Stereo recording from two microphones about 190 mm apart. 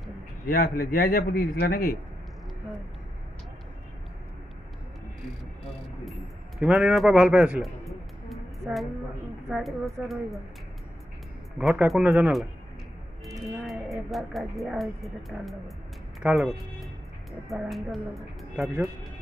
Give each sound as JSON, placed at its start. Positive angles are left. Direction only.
{"t": 0.5, "sound": "a man's voice", "side_deg": 50}
{"t": 6.6, "sound": "a man's voice", "side_deg": -5}
{"t": 11.5, "sound": "speech", "side_deg": -5}
{"t": 13.7, "sound": "music", "side_deg": 0}
{"t": 14.1, "sound": "speech", "side_deg": 0}